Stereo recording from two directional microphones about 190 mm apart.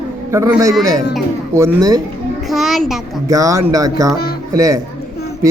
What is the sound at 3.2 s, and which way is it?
A man's voice, 15° right (ahead or behind).